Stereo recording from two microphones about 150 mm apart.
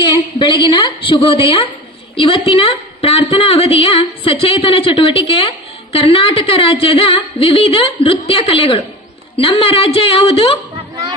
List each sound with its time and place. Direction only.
0.0 s a woman's voice: 30° left (ahead or behind)